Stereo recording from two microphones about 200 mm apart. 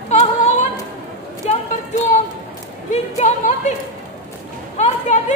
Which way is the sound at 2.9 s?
35° left (ahead or behind).